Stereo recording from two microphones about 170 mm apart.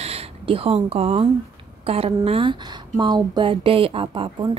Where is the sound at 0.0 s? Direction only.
35° right (ahead or behind).